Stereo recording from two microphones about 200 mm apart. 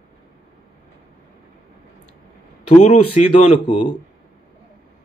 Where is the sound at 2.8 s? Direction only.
35° left (ahead or behind).